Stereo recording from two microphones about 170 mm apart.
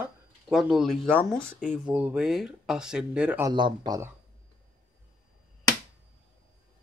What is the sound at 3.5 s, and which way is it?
Speech, 25° right (ahead or behind).